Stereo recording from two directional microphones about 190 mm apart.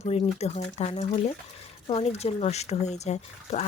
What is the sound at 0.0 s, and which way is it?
Speech, 35° left (ahead or behind).